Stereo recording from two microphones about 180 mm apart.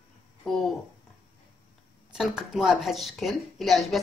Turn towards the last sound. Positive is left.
turn(degrees=0)  # may be behind; listen again after turning